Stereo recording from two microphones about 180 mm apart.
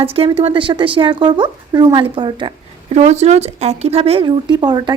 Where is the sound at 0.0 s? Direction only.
30° right (ahead or behind).